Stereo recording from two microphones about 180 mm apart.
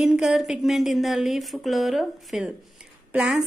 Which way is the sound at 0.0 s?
5° right (ahead or behind).